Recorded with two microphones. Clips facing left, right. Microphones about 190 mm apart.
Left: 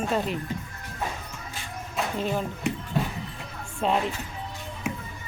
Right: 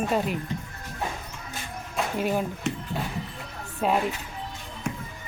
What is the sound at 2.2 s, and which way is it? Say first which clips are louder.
Speech: right 3 dB; 10° right (ahead or behind).